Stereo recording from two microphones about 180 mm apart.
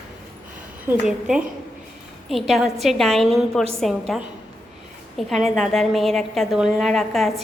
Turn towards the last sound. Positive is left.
turn(degrees=0)  # may be behind; listen again after turning